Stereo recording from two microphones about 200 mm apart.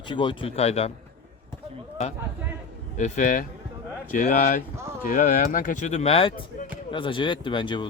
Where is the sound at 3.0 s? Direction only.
40° left (ahead or behind).